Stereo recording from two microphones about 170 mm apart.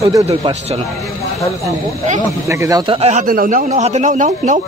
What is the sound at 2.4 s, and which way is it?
Speech, 20° right (ahead or behind).